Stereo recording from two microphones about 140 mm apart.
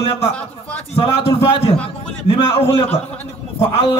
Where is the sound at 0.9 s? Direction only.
40° left (ahead or behind).